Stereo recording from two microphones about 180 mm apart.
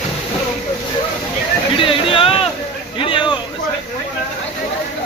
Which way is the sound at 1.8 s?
30° left (ahead or behind).